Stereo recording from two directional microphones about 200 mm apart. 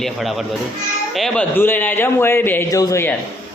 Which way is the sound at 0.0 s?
Centre (ahead or behind).